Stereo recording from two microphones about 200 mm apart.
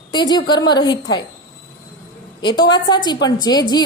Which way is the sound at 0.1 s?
20° left (ahead or behind).